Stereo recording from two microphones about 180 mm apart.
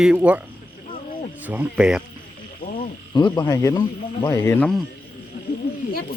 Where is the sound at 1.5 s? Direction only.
5° right (ahead or behind).